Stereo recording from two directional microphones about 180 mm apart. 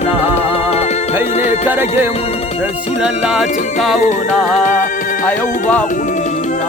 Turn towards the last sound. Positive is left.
turn(degrees=45)  # may be behind; listen again after turning